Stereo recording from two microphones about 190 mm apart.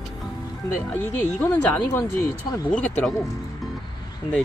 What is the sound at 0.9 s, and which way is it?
Speech, 10° left (ahead or behind).